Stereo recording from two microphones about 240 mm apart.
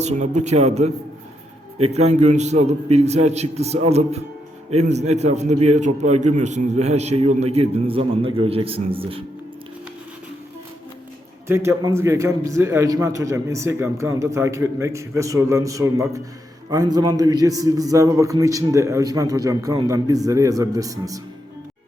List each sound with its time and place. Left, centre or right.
0.0 s a man's voice: right
11.4 s a man's voice: centre